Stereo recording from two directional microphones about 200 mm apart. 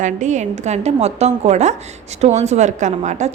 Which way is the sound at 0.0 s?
35° right (ahead or behind).